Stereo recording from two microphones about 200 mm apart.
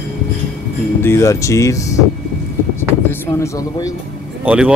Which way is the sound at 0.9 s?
10° left (ahead or behind).